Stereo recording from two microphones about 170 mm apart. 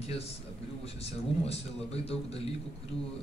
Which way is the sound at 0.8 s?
35° left (ahead or behind).